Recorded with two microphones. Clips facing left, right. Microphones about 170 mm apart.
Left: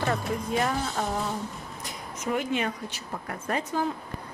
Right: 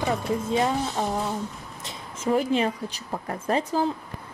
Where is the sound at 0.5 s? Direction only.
20° right (ahead or behind).